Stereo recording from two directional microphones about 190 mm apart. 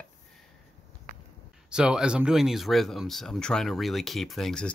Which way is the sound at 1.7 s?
5° right (ahead or behind).